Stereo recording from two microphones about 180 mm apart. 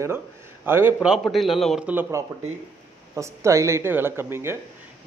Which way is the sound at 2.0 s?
15° right (ahead or behind).